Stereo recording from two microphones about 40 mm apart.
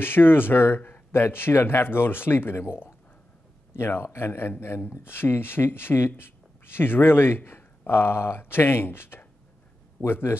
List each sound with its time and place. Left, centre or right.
0.0 s speech: left
1.1 s a man's voice: left
4.8 s speech: left
10.0 s a man's voice: left